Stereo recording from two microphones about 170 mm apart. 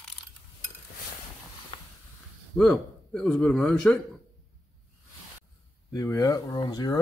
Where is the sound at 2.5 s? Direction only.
5° left (ahead or behind).